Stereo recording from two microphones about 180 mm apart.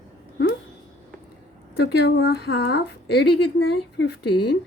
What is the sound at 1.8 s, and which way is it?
Speech, 65° left (ahead or behind).